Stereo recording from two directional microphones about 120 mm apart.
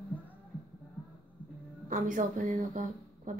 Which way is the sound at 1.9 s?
90° right.